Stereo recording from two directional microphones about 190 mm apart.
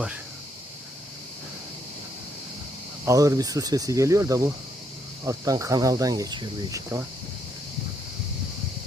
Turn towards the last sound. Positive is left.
turn(degrees=-15)  # may be behind; listen again after turning